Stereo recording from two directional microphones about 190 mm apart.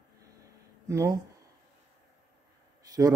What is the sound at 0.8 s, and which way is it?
Speech, 15° right (ahead or behind).